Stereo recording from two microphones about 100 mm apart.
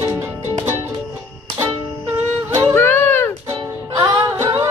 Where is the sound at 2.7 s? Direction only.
20° left (ahead or behind).